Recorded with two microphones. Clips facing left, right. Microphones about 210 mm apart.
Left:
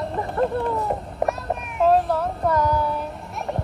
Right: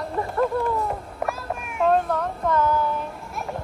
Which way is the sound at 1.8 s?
5° left (ahead or behind).